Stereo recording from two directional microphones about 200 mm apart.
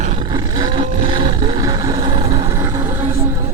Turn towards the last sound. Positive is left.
turn(degrees=-15)  # may be behind; listen again after turning